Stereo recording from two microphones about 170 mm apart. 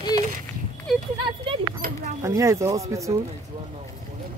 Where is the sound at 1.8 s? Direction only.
55° right (ahead or behind).